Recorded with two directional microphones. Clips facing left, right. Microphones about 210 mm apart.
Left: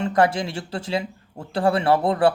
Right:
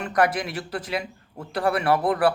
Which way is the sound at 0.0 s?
25° left (ahead or behind).